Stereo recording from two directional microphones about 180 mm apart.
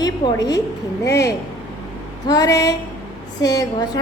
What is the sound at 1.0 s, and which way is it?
Female singing, 15° left (ahead or behind).